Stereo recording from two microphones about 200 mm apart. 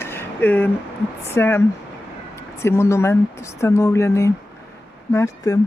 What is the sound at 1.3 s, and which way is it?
Speech, 10° left (ahead or behind).